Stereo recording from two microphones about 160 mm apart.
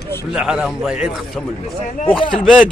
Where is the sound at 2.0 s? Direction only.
30° left (ahead or behind).